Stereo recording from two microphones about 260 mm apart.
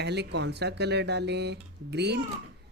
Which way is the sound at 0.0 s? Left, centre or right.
Right.